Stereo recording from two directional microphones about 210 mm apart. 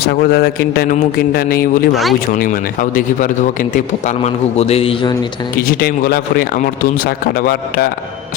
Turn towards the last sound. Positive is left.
turn(degrees=45)  # may be behind; listen again after turning